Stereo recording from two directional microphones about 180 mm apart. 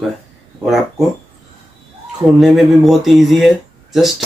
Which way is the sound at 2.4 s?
Centre (ahead or behind).